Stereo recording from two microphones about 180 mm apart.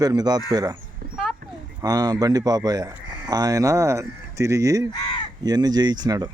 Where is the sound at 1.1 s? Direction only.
Centre (ahead or behind).